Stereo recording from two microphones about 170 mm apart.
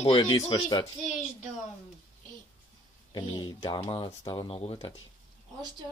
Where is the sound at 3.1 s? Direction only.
25° left (ahead or behind).